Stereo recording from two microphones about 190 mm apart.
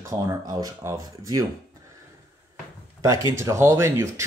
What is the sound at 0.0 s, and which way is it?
Speech, 15° right (ahead or behind).